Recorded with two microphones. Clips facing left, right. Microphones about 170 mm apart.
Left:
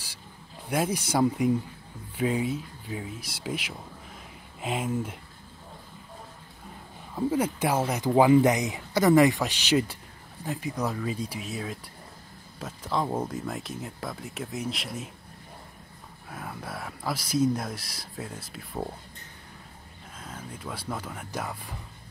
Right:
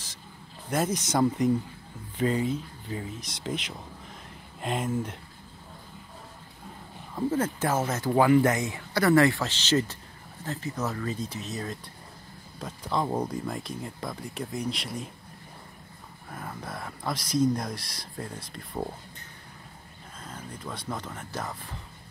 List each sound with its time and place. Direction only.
0.7 s speech: 10° left (ahead or behind)
7.2 s speech: 10° left (ahead or behind)
16.3 s speech: 5° left (ahead or behind)
20.2 s speech: 5° left (ahead or behind)